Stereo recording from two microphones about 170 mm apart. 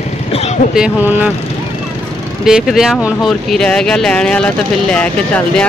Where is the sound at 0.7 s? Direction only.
5° right (ahead or behind).